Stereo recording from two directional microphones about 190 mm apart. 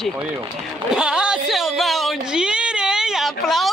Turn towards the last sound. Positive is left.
turn(degrees=0)  # may be behind; listen again after turning